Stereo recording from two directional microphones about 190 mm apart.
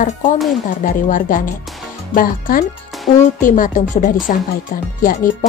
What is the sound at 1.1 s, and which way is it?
Speech, 45° left (ahead or behind).